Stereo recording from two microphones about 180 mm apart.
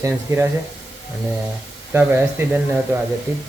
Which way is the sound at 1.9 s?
10° right (ahead or behind).